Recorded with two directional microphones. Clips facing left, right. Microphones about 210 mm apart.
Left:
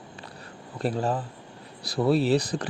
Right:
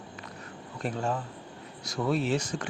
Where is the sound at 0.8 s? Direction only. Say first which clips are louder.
Left 4 dB; 35° left (ahead or behind).